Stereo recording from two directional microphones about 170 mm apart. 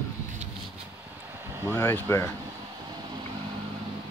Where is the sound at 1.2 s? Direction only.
15° right (ahead or behind).